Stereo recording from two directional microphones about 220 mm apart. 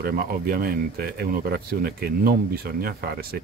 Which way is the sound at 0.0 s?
45° right (ahead or behind).